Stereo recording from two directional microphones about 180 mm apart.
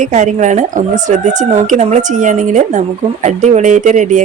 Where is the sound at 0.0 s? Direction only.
45° right (ahead or behind).